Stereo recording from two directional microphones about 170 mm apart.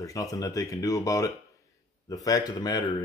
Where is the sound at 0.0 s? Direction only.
20° left (ahead or behind).